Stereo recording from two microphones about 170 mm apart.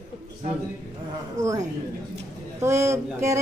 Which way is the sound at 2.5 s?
15° right (ahead or behind).